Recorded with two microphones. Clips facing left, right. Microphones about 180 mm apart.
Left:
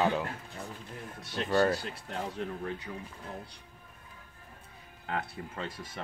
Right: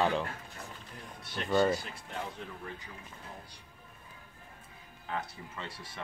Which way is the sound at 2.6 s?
70° left (ahead or behind).